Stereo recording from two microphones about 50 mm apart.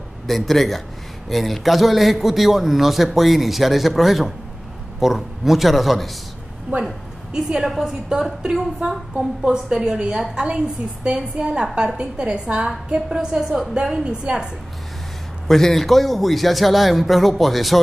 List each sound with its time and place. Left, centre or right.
0.3 s a man's voice: centre
7.3 s a woman's voice: centre
15.4 s a man's voice: centre